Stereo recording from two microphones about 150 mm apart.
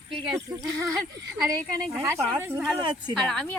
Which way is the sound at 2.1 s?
15° right (ahead or behind).